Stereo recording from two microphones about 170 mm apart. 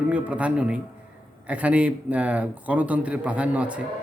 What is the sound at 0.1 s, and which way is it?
A man's voice, 10° right (ahead or behind).